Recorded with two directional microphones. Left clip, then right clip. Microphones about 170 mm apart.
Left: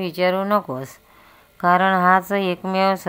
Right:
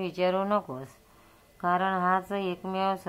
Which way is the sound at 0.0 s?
25° left (ahead or behind).